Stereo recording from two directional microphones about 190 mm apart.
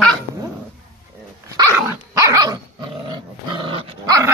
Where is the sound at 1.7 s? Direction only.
15° right (ahead or behind).